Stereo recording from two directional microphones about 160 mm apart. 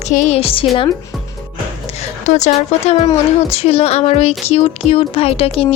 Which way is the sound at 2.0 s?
45° left (ahead or behind).